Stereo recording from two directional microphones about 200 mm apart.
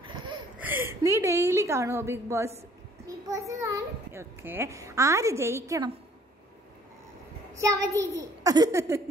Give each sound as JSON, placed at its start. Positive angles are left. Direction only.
{"t": 0.6, "sound": "a woman's voice", "side_deg": -10}
{"t": 7.6, "sound": "a child's voice", "side_deg": -15}